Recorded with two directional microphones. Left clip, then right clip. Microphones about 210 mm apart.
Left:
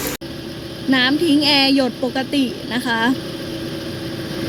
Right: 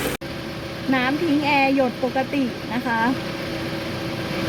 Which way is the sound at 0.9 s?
30° left (ahead or behind).